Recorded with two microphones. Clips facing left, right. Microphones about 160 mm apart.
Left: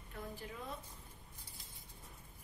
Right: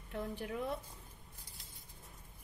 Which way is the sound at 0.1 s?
70° right (ahead or behind).